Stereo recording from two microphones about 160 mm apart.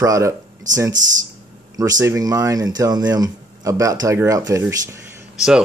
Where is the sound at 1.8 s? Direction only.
20° right (ahead or behind).